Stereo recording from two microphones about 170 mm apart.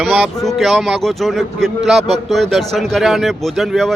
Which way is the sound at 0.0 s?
5° left (ahead or behind).